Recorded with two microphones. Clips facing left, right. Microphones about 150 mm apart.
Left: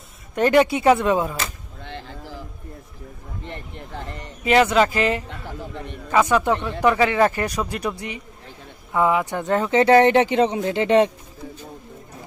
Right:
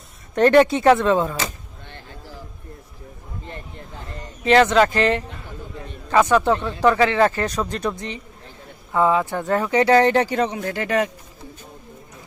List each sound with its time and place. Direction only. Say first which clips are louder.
0.3 s speech: right 3 dB; 10° left (ahead or behind)
1.8 s vehicle: left 6 dB; 90° left
4.4 s speech: right 2 dB; 10° left (ahead or behind); by 11.1 s 25° left (ahead or behind)